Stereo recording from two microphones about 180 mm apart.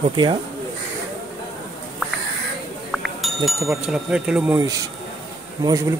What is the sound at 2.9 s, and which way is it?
Speech, centre (ahead or behind).